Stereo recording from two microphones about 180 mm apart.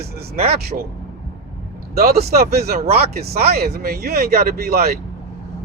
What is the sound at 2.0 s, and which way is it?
Speech, 60° right (ahead or behind).